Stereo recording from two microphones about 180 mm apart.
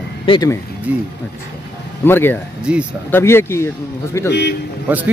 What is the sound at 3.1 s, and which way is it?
A man's voice, 15° left (ahead or behind).